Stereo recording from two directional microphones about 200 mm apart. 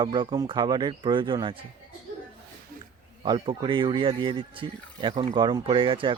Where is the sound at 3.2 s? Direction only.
20° right (ahead or behind).